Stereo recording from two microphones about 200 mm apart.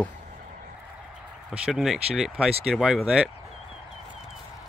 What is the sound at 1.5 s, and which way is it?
Speech, 5° right (ahead or behind).